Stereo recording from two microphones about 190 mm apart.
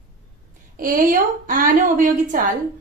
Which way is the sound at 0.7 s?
45° right (ahead or behind).